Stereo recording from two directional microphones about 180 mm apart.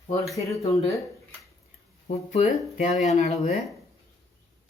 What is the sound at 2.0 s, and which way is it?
Speech, 35° left (ahead or behind).